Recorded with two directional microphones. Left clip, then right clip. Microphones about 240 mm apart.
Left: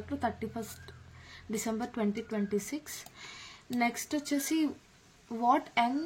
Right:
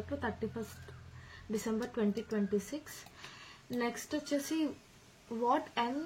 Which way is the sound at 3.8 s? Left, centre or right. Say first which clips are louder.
Left 5 dB; left.